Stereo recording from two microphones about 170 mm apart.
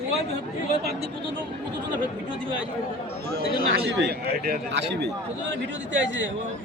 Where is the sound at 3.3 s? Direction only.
70° right (ahead or behind); by 6.3 s 90° right.